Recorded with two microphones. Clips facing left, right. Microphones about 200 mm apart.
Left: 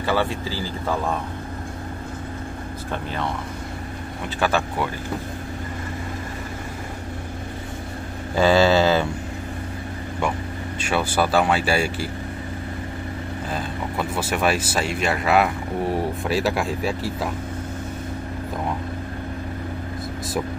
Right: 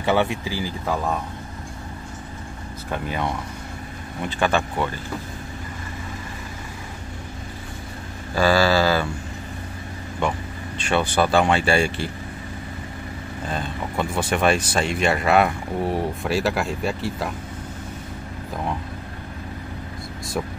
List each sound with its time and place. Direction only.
0.0 s speech: 20° right (ahead or behind)
2.9 s speech: 10° right (ahead or behind)
4.4 s speech: 5° left (ahead or behind)
8.4 s mantra: 20° left (ahead or behind)
10.8 s speech: 5° left (ahead or behind)
13.5 s speech: 5° left (ahead or behind)